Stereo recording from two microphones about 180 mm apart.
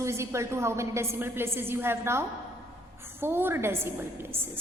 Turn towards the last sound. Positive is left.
turn(degrees=-15)  # may be behind; listen again after turning